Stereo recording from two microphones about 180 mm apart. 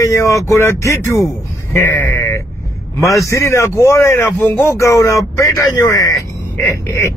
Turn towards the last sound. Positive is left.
turn(degrees=15)  # may be behind; listen again after turning